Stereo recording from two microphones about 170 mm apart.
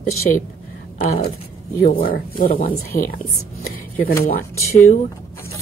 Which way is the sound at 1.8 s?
55° left (ahead or behind).